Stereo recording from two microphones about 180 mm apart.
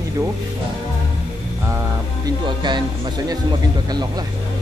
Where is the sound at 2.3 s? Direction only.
25° right (ahead or behind).